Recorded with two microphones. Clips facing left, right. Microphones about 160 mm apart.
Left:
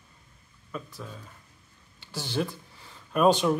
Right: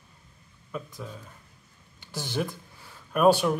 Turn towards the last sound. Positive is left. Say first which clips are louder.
# right 1 dB
turn(degrees=-10)  # may be behind; listen again after turning